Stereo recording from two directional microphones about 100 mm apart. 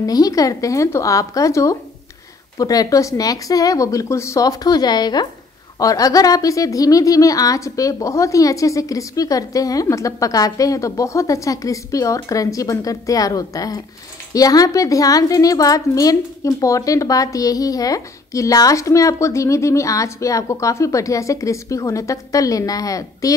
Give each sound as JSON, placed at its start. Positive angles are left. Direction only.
{"t": 0.0, "sound": "a woman's voice", "side_deg": 35}